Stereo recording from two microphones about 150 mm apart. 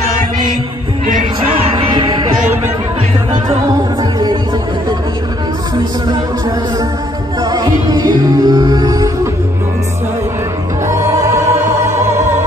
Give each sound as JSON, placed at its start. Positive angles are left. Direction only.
{"t": 1.5, "sound": "music", "side_deg": -35}
{"t": 7.4, "sound": "music", "side_deg": -25}
{"t": 10.9, "sound": "music", "side_deg": -20}